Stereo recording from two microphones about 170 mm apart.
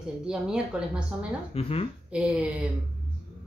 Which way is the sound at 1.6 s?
35° left (ahead or behind).